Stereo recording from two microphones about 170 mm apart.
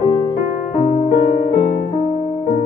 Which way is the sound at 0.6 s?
45° left (ahead or behind).